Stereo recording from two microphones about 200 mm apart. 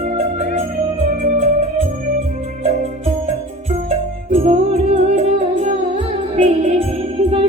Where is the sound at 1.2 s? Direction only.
40° right (ahead or behind).